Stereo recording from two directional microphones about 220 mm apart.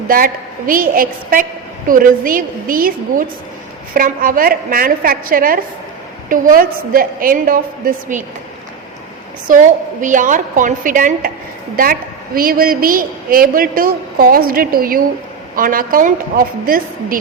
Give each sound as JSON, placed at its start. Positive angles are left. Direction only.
{"t": 0.7, "sound": "a woman's voice", "side_deg": -40}
{"t": 9.5, "sound": "a woman's voice", "side_deg": -35}